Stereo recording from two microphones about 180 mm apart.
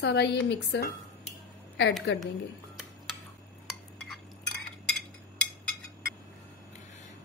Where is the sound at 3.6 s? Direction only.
Centre (ahead or behind).